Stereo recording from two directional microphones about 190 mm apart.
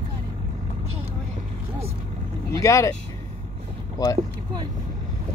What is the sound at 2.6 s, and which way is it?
Speech, 15° left (ahead or behind).